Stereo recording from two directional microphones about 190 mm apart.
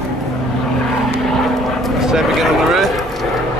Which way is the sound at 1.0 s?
Centre (ahead or behind).